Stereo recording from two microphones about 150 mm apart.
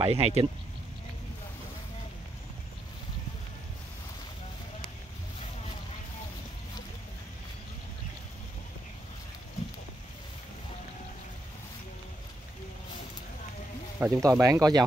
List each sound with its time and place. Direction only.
0.0 s speech: 40° right (ahead or behind)
13.9 s speech: 15° right (ahead or behind)